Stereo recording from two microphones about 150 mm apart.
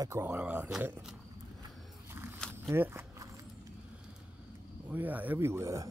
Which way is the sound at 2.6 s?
15° right (ahead or behind).